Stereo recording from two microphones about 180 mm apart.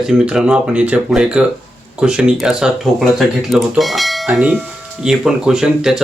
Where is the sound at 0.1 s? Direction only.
5° right (ahead or behind).